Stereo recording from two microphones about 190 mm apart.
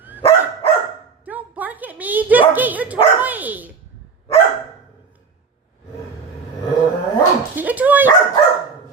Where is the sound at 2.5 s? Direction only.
10° right (ahead or behind).